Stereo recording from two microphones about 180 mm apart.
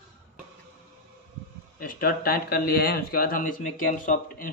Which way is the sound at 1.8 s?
50° left (ahead or behind).